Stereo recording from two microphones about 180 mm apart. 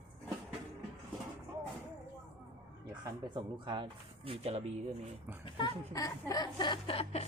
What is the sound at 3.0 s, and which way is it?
Speech, 25° right (ahead or behind).